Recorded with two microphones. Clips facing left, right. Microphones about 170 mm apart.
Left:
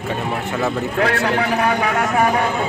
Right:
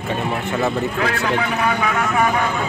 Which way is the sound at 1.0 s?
60° left (ahead or behind).